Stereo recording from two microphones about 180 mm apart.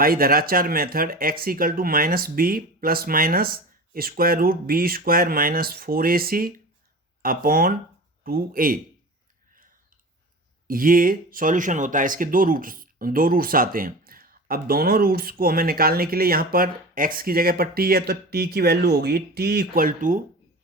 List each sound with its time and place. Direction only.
0.0 s speech: 55° right (ahead or behind)
10.7 s speech: 50° right (ahead or behind)